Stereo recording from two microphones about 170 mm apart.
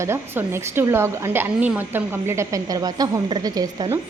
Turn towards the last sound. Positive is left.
turn(degrees=-20)  # may be behind; listen again after turning